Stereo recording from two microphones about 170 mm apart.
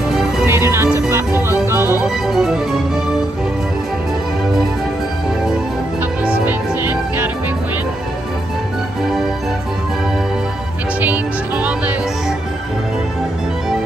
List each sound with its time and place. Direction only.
0.5 s music: 15° right (ahead or behind)
2.0 s music: centre (ahead or behind)
6.4 s music: 10° right (ahead or behind)
11.0 s music: 10° right (ahead or behind)